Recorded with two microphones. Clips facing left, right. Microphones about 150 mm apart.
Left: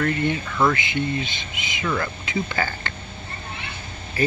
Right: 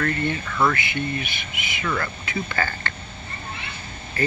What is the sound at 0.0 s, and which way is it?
Speech, 20° left (ahead or behind).